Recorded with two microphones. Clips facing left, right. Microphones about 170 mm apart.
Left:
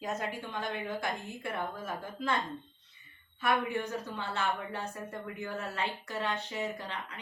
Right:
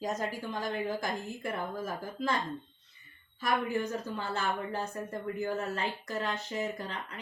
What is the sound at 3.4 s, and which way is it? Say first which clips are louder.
A woman's voice: even; 40° right (ahead or behind).